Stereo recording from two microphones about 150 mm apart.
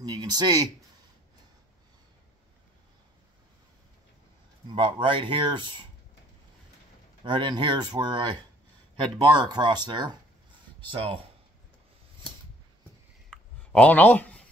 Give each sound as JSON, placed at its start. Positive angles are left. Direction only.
{"t": 0.0, "sound": "speech", "side_deg": -25}
{"t": 4.6, "sound": "speech", "side_deg": -35}
{"t": 7.2, "sound": "speech", "side_deg": -30}
{"t": 13.3, "sound": "writing", "side_deg": 5}